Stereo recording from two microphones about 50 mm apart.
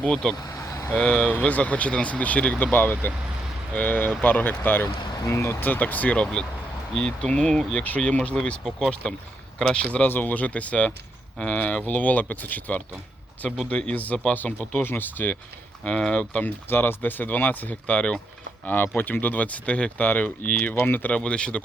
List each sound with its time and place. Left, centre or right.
0.0 s speech: centre
1.3 s speech: left
2.7 s speech: left
5.2 s speech: left
6.9 s speech: centre
7.9 s speech: left
9.7 s speech: left
10.1 s speech: left
14.8 s speech: left
15.8 s speech: centre
16.4 s speech: left
18.6 s speech: left
21.1 s speech: left